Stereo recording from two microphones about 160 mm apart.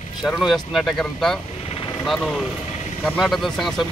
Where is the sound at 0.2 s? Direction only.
Centre (ahead or behind).